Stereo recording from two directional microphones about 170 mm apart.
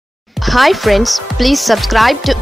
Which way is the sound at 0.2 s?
Centre (ahead or behind).